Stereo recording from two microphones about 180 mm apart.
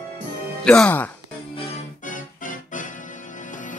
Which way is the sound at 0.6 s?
5° left (ahead or behind).